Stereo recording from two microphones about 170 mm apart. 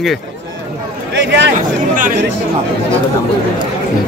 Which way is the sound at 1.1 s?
90° right.